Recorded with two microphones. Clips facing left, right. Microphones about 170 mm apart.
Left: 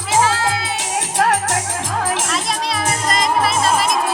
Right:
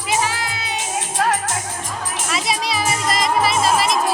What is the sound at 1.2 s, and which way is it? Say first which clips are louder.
Music: left 3 dB; 70° left (ahead or behind).